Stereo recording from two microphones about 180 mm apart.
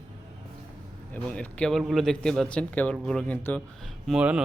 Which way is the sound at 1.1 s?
5° left (ahead or behind).